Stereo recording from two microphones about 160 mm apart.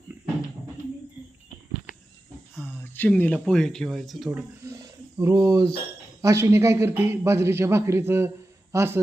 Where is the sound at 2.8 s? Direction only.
10° left (ahead or behind).